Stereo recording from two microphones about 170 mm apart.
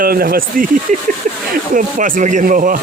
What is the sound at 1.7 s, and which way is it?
Speech, 50° right (ahead or behind).